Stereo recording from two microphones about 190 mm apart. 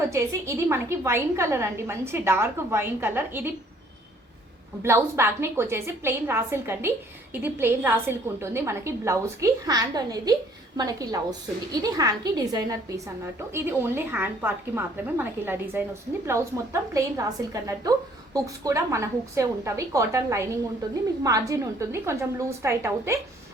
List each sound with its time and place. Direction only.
0.0 s a woman's voice: 15° right (ahead or behind)
4.8 s a woman's voice: 15° right (ahead or behind)